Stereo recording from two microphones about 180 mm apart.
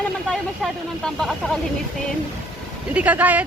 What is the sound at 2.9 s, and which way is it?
Vehicle, 10° right (ahead or behind).